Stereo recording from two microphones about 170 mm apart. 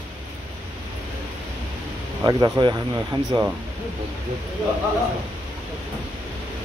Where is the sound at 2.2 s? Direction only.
25° right (ahead or behind).